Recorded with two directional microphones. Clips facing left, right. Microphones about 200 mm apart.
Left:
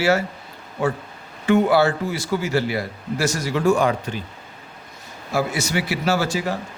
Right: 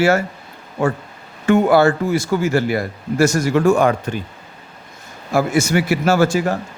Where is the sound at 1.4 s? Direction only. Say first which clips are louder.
Right 4 dB; 50° right (ahead or behind).